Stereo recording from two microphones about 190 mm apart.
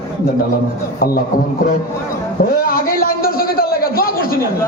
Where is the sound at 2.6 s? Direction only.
50° left (ahead or behind).